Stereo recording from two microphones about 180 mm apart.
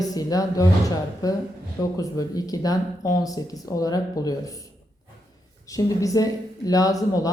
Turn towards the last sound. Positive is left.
turn(degrees=20)  # may be behind; listen again after turning